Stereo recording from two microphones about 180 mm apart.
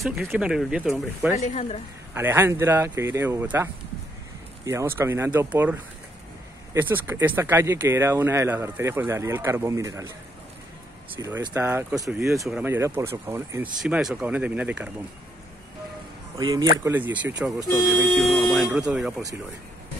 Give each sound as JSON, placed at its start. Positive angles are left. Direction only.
{"t": 0.3, "sound": "speech", "side_deg": -5}
{"t": 1.3, "sound": "speech", "side_deg": 40}
{"t": 2.1, "sound": "speech", "side_deg": -10}
{"t": 4.6, "sound": "speech", "side_deg": -15}
{"t": 11.1, "sound": "speech", "side_deg": -15}
{"t": 16.3, "sound": "speech", "side_deg": -20}
{"t": 16.7, "sound": "speech", "side_deg": -10}